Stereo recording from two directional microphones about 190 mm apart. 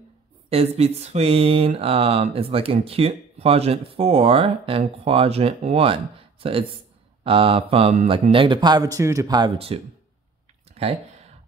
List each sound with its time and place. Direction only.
0.5 s speech: 30° right (ahead or behind)
7.2 s speech: 30° right (ahead or behind)
10.7 s a sound: 35° right (ahead or behind)